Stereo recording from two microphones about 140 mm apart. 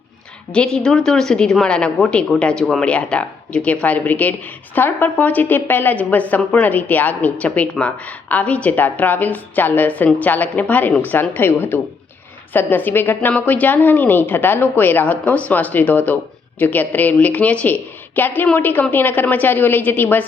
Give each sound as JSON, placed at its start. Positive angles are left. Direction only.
{"t": 0.5, "sound": "a woman's voice", "side_deg": 5}